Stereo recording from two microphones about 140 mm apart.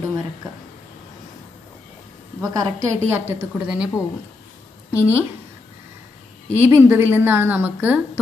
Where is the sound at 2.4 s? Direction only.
25° right (ahead or behind).